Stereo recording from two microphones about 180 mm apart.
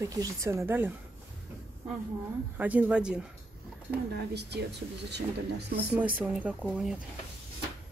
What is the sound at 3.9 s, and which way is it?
Speech, 65° right (ahead or behind).